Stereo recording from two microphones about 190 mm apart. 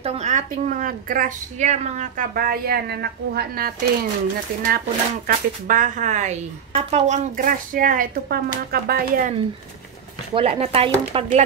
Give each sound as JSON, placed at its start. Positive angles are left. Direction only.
{"t": 0.0, "sound": "a woman's voice", "side_deg": -35}
{"t": 2.3, "sound": "speech", "side_deg": -50}
{"t": 10.3, "sound": "a woman's voice", "side_deg": -30}